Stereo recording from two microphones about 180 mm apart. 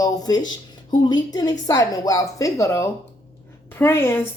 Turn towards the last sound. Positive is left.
turn(degrees=10)  # may be behind; listen again after turning